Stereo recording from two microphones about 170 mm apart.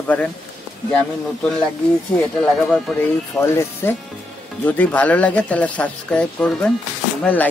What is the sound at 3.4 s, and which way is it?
A man's voice, 15° left (ahead or behind).